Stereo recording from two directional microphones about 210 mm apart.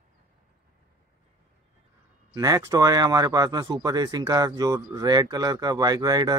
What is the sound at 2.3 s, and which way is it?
Speech, 15° right (ahead or behind).